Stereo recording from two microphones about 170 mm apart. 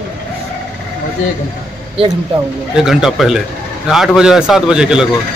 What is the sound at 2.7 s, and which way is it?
A man's voice, 5° right (ahead or behind).